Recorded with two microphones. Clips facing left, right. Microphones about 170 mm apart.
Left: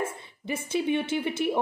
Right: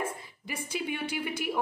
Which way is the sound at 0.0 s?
25° left (ahead or behind).